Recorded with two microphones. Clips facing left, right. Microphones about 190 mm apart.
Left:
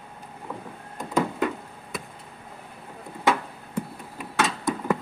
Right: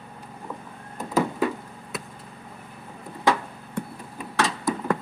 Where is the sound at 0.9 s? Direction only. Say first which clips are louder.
Right 1 dB; 5° right (ahead or behind).